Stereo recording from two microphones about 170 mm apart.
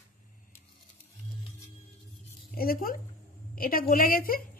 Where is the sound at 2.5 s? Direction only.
60° left (ahead or behind).